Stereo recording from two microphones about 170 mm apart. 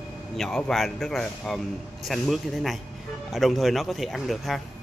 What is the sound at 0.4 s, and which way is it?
Speech, centre (ahead or behind).